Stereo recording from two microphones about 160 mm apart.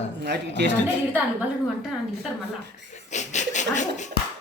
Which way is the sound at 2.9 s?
45° left (ahead or behind).